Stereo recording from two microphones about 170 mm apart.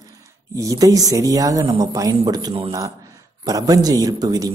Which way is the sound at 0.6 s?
20° right (ahead or behind).